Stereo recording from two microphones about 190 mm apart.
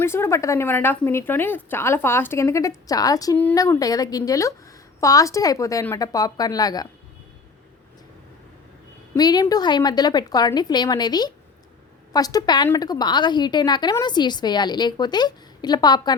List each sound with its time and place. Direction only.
0.0 s a woman's voice: 15° left (ahead or behind)
9.1 s a woman's voice: 20° left (ahead or behind)